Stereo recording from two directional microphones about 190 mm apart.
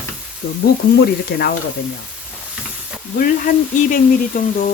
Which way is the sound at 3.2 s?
45° left (ahead or behind).